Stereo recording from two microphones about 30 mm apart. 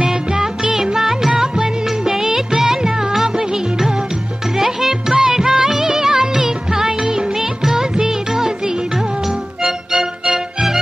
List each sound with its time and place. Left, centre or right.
0.3 s music: right
0.9 s music: centre
4.6 s music: centre